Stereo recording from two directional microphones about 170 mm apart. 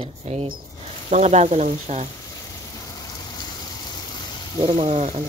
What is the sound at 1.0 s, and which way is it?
Frying, 45° right (ahead or behind).